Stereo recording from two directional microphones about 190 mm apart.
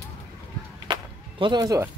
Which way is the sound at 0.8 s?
25° right (ahead or behind).